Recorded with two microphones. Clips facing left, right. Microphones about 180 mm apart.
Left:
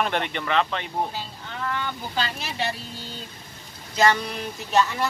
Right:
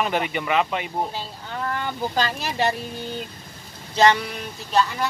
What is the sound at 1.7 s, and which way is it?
Speech, 45° right (ahead or behind).